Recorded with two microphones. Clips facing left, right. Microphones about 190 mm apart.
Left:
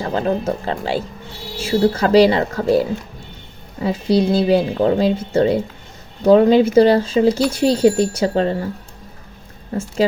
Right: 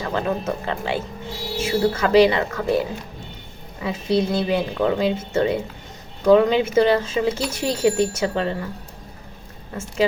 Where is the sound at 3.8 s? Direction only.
35° left (ahead or behind).